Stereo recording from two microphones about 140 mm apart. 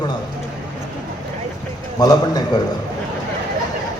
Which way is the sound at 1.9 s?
25° left (ahead or behind).